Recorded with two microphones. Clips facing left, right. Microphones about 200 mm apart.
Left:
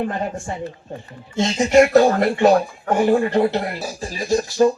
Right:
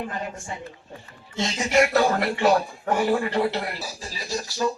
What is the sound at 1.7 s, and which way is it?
Speech, 45° left (ahead or behind).